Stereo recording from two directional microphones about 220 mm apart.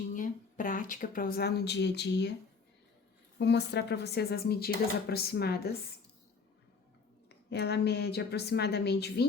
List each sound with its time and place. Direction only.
0.1 s speech: 40° left (ahead or behind)
3.3 s speech: 50° left (ahead or behind)
7.3 s speech: 50° left (ahead or behind)